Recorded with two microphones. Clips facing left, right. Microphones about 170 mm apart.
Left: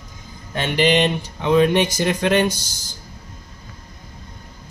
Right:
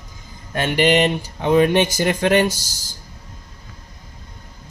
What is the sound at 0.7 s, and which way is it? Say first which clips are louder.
Speech: right 1 dB; 45° right (ahead or behind).